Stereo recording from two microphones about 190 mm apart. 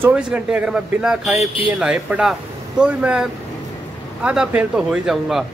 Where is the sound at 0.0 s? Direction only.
5° right (ahead or behind).